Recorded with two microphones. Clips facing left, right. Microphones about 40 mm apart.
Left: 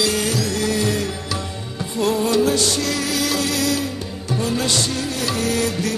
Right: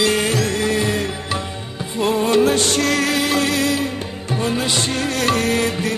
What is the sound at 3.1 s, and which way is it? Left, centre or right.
Music, right.